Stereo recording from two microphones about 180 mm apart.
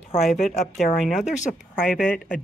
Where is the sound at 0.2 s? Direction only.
Centre (ahead or behind).